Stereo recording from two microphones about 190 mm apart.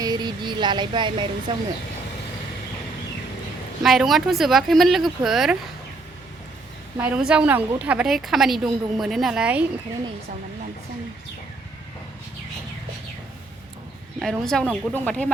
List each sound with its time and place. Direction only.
0.0 s a sound: 20° right (ahead or behind)
1.5 s speech: 25° right (ahead or behind)
3.8 s a woman's voice: centre (ahead or behind)
7.0 s a woman's voice: 5° right (ahead or behind)
14.2 s a woman's voice: centre (ahead or behind)